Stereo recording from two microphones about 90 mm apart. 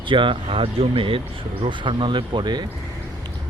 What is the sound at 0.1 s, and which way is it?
Speech, 65° right (ahead or behind).